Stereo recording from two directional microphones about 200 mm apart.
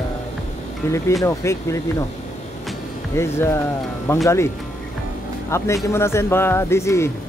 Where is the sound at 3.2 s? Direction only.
15° left (ahead or behind).